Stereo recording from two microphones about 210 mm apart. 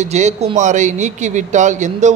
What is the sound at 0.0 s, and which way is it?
Speech, 35° right (ahead or behind).